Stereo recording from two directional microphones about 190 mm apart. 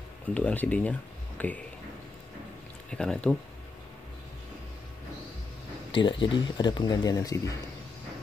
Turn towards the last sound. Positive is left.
turn(degrees=20)  # may be behind; listen again after turning